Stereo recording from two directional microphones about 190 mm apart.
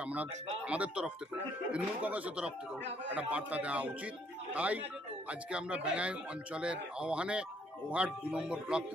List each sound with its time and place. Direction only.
0.0 s speech: 5° right (ahead or behind)